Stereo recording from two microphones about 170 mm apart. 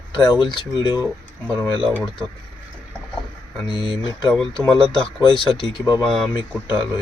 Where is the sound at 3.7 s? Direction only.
25° left (ahead or behind).